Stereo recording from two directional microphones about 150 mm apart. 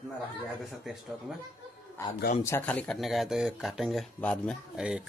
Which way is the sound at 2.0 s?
20° left (ahead or behind).